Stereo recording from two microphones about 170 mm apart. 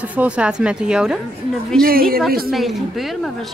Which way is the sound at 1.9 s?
60° right (ahead or behind).